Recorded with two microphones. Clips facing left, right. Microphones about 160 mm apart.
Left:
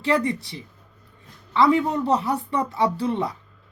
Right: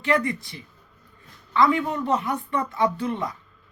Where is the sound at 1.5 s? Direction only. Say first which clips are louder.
Left 2 dB; 30° left (ahead or behind).